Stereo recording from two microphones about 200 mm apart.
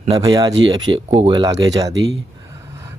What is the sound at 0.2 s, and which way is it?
Speech, 20° right (ahead or behind).